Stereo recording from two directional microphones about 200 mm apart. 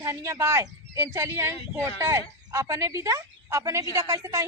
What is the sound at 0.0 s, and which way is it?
A woman's voice, 15° right (ahead or behind).